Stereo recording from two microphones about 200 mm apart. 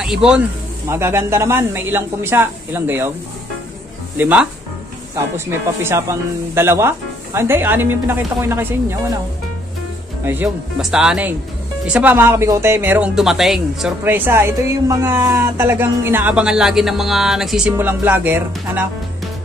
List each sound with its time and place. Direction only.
0.0 s speech: 5° right (ahead or behind)
4.2 s speech: 5° right (ahead or behind)
5.8 s speech: 15° right (ahead or behind)
10.2 s speech: 10° right (ahead or behind)